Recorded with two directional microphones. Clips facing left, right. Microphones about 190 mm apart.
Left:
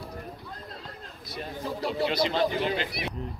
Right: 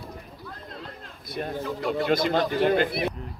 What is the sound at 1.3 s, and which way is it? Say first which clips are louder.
Speech: right 6 dB; 55° right (ahead or behind).